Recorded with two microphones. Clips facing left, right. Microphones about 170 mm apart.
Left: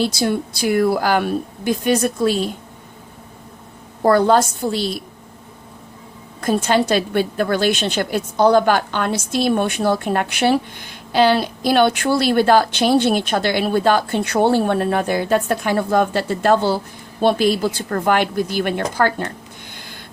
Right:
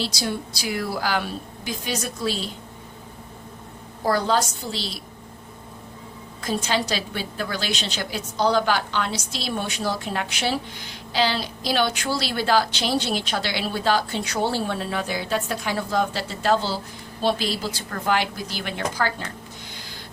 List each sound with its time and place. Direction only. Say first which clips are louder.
0.0 s a woman's voice: left 8 dB; 55° left (ahead or behind)
4.0 s a woman's voice: left 8 dB; 55° left (ahead or behind)
6.4 s a woman's voice: left 8 dB; 55° left (ahead or behind)